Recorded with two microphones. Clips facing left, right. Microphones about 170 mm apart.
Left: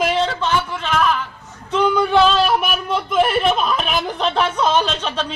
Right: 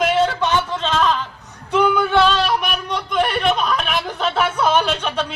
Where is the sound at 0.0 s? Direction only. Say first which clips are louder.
Right 2 dB; centre (ahead or behind).